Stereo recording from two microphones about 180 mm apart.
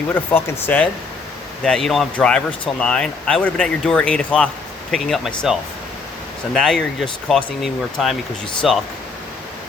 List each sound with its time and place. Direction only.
0.1 s speech: 10° left (ahead or behind)